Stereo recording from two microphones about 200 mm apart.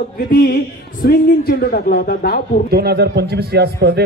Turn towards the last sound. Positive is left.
turn(degrees=-55)  # may be behind; listen again after turning